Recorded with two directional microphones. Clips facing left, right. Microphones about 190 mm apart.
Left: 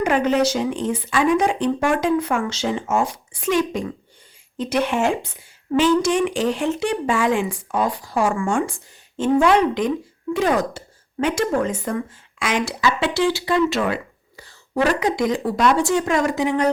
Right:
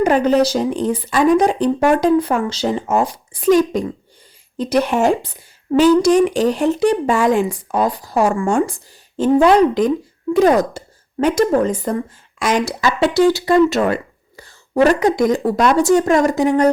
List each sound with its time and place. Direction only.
0.0 s speech: 35° right (ahead or behind)